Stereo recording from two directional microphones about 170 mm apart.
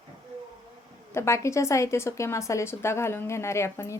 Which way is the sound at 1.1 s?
15° left (ahead or behind).